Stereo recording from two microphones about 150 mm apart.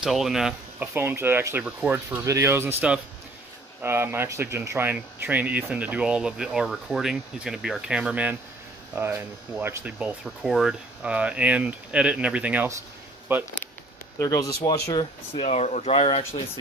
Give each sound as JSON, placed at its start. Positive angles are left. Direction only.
{"t": 0.0, "sound": "speech", "side_deg": 0}
{"t": 0.9, "sound": "speech", "side_deg": -15}
{"t": 3.8, "sound": "speech", "side_deg": -15}
{"t": 10.2, "sound": "speech", "side_deg": 0}
{"t": 14.1, "sound": "speech", "side_deg": 20}
{"t": 14.9, "sound": "speech", "side_deg": 35}